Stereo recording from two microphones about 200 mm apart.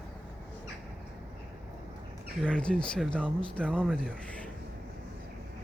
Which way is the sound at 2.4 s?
5° left (ahead or behind).